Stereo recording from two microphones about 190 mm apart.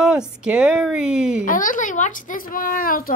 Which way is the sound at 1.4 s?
45° left (ahead or behind).